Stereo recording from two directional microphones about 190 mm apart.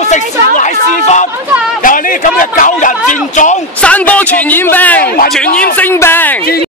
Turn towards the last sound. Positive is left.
turn(degrees=10)  # may be behind; listen again after turning